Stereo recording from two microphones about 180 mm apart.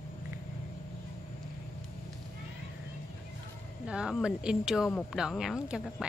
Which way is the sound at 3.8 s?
5° right (ahead or behind).